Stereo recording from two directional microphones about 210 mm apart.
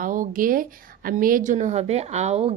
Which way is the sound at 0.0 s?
40° right (ahead or behind).